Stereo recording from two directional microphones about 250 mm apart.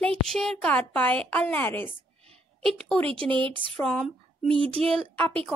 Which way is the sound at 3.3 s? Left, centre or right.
Centre.